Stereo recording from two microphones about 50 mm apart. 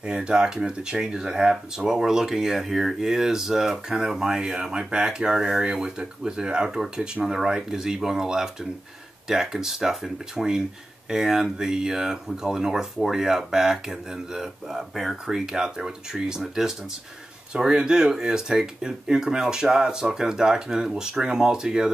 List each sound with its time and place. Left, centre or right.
0.0 s speech: centre